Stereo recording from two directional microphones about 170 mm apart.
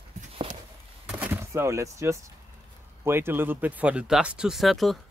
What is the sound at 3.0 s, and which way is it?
Speech, 15° right (ahead or behind).